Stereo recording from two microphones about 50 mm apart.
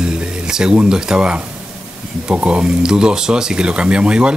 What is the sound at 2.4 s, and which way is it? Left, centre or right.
Speech, centre.